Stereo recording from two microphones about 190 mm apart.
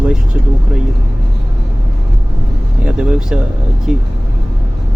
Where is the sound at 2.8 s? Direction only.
5° right (ahead or behind).